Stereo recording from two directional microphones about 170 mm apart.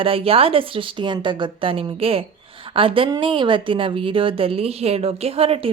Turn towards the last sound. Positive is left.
turn(degrees=-35)  # may be behind; listen again after turning